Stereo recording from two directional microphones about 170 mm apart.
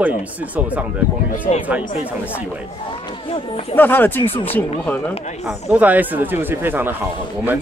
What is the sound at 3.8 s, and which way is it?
Speech, 10° left (ahead or behind).